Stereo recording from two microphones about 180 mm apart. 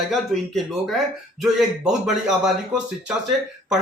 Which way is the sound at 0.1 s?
Centre (ahead or behind).